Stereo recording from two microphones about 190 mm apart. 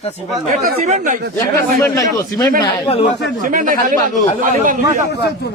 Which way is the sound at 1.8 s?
20° left (ahead or behind).